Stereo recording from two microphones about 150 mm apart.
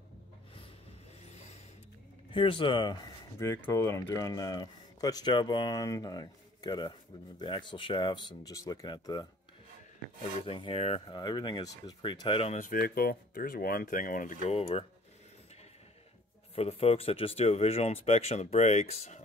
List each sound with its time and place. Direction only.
1.2 s a sound: 45° left (ahead or behind)
2.3 s speech: 35° left (ahead or behind)
10.4 s speech: 40° left (ahead or behind)
11.1 s speech: 30° left (ahead or behind)
12.5 s speech: 70° left (ahead or behind)
16.5 s speech: 40° left (ahead or behind)